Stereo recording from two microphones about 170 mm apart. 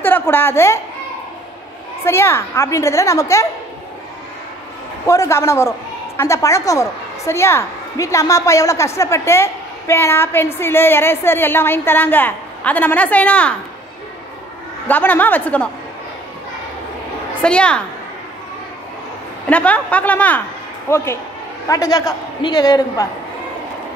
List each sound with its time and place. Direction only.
0.0 s a woman's voice: 10° left (ahead or behind)
2.0 s a woman's voice: 15° left (ahead or behind)
5.0 s a woman's voice: 20° left (ahead or behind)
14.9 s a woman's voice: 10° left (ahead or behind)
17.4 s a woman's voice: 5° left (ahead or behind)
19.5 s a woman's voice: 10° left (ahead or behind)